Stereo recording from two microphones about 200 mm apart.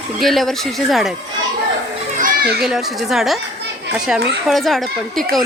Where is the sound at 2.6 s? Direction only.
Centre (ahead or behind).